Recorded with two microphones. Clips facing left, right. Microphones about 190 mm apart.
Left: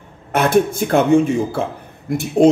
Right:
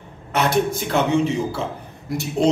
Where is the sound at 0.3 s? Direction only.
50° left (ahead or behind).